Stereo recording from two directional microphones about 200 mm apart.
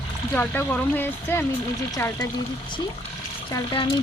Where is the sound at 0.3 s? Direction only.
10° left (ahead or behind).